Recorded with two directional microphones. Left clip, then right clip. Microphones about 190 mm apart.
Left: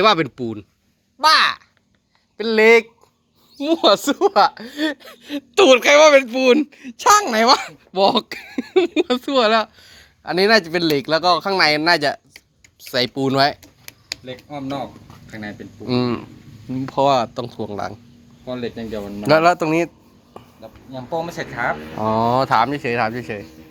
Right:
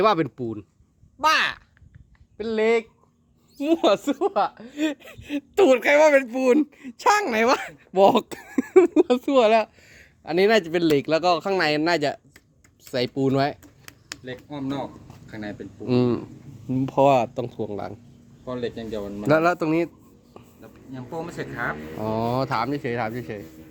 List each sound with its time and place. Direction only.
0.0 s speech: 10° right (ahead or behind)
2.4 s speech: 10° left (ahead or behind)
3.6 s speech: 15° right (ahead or behind)
4.0 s speech: 10° left (ahead or behind)
4.7 s speech: 10° right (ahead or behind)
7.9 s speech: 30° right (ahead or behind)
9.0 s speech: 15° right (ahead or behind); by 13.6 s centre (ahead or behind)
15.9 s speech: 20° right (ahead or behind); by 17.9 s centre (ahead or behind)
18.6 s speech: 20° left (ahead or behind)
19.3 s speech: centre (ahead or behind)
20.6 s a sound: 35° left (ahead or behind)
21.9 s speech: centre (ahead or behind)